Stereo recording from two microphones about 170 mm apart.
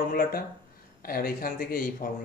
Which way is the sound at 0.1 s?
60° left (ahead or behind).